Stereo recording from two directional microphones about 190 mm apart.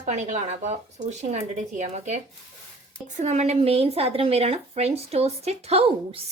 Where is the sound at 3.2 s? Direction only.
35° right (ahead or behind).